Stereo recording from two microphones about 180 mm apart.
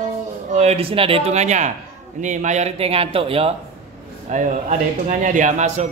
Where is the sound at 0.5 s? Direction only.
35° right (ahead or behind).